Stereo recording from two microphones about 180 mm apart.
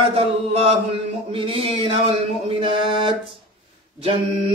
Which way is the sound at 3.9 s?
30° right (ahead or behind).